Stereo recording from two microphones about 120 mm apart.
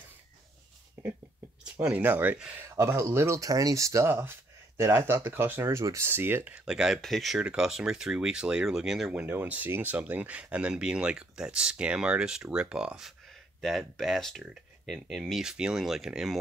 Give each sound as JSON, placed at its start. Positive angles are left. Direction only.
{"t": 1.6, "sound": "speech", "side_deg": -10}
{"t": 2.6, "sound": "speech", "side_deg": -25}
{"t": 9.2, "sound": "speech", "side_deg": -15}